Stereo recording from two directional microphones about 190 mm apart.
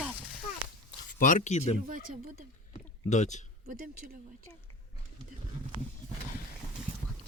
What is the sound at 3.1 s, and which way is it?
Speech, 40° left (ahead or behind).